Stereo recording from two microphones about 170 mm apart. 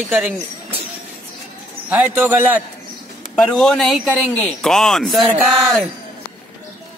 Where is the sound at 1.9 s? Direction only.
10° right (ahead or behind).